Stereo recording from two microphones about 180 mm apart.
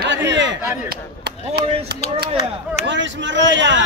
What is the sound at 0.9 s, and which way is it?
Speech, 65° right (ahead or behind).